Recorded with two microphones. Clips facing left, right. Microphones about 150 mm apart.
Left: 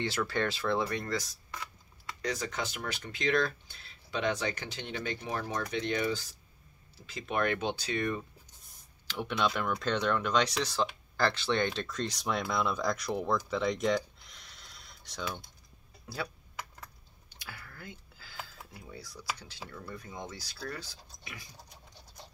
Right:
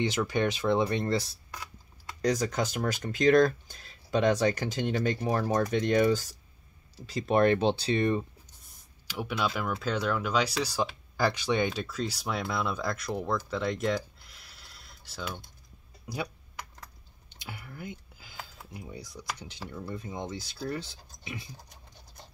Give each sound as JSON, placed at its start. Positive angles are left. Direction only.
{"t": 0.0, "sound": "speech", "side_deg": -15}
{"t": 2.2, "sound": "speech", "side_deg": -40}
{"t": 9.0, "sound": "speech", "side_deg": -5}
{"t": 13.5, "sound": "a sound", "side_deg": 0}
{"t": 16.1, "sound": "speech", "side_deg": -15}
{"t": 17.3, "sound": "a sound", "side_deg": -20}
{"t": 18.7, "sound": "speech", "side_deg": -20}